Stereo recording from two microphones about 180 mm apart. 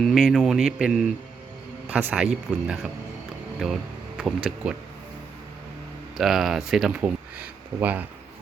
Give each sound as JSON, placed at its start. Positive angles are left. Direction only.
{"t": 0.0, "sound": "speech", "side_deg": 0}
{"t": 6.1, "sound": "speech", "side_deg": 0}